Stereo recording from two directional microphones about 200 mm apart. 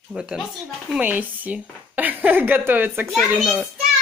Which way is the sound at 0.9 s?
5° right (ahead or behind).